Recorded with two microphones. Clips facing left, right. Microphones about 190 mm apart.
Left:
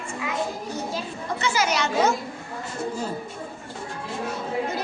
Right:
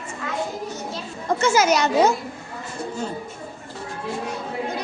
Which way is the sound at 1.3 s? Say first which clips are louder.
Right 6 dB; 45° right (ahead or behind).